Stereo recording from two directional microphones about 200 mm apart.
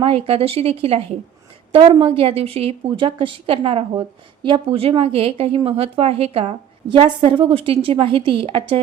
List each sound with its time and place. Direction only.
0.0 s a woman's voice: 30° right (ahead or behind)